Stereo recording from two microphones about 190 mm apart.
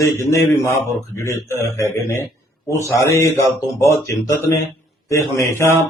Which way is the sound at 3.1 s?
15° left (ahead or behind).